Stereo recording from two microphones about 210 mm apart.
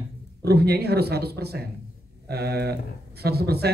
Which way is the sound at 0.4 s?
50° right (ahead or behind).